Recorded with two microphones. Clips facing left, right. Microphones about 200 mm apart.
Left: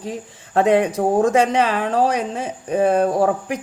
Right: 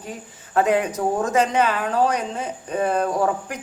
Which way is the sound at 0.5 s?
30° left (ahead or behind).